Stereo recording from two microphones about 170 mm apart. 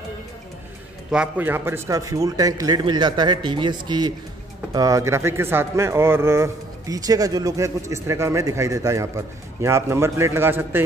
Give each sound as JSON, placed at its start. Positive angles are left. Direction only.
{"t": 1.1, "sound": "a man's voice", "side_deg": -10}